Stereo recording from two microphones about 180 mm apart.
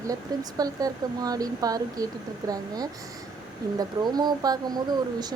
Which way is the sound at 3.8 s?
20° right (ahead or behind).